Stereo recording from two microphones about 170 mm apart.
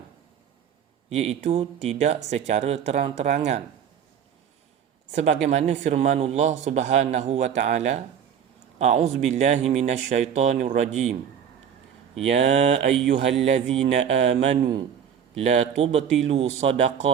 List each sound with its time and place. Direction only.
1.1 s speech: 40° right (ahead or behind)
5.1 s speech: 40° right (ahead or behind)
12.3 s speech: 40° right (ahead or behind)
13.1 s speech: 90° right
13.9 s speech: 40° right (ahead or behind)